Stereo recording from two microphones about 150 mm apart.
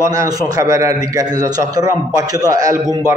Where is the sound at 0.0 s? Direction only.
20° right (ahead or behind).